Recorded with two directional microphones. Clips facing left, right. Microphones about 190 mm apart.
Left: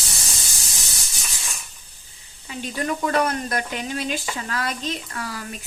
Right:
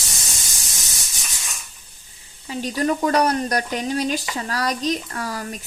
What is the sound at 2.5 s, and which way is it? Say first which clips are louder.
Speech: right 5 dB; 35° right (ahead or behind).